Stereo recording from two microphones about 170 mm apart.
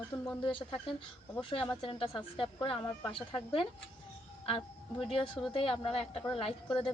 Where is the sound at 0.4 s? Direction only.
30° left (ahead or behind).